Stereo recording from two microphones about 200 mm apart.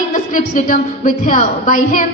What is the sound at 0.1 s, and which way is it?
A woman's voice, 40° left (ahead or behind).